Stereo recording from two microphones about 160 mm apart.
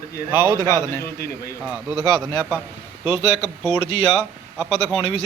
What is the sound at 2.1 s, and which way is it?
Speech, 15° right (ahead or behind).